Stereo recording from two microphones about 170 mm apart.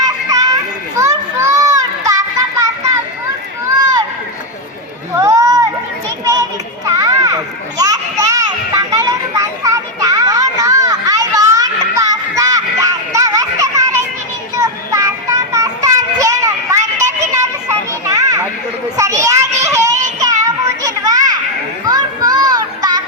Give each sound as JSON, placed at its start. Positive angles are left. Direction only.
{"t": 0.0, "sound": "children playing", "side_deg": -20}
{"t": 3.8, "sound": "run", "side_deg": -25}
{"t": 5.1, "sound": "a sound", "side_deg": -20}
{"t": 6.8, "sound": "children playing", "side_deg": -20}
{"t": 14.6, "sound": "child singing", "side_deg": -20}
{"t": 17.3, "sound": "children playing", "side_deg": -20}
{"t": 18.9, "sound": "child singing", "side_deg": -20}
{"t": 21.8, "sound": "children playing", "side_deg": -25}